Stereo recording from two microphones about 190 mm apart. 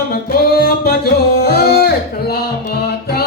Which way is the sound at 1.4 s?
55° left (ahead or behind).